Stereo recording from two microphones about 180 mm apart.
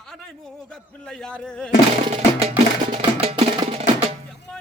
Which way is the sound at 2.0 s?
40° right (ahead or behind).